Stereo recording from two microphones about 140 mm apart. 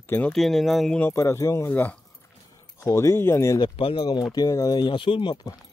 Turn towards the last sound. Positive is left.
turn(degrees=30)  # may be behind; listen again after turning